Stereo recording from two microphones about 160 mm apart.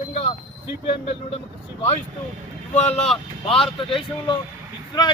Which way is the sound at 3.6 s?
35° left (ahead or behind).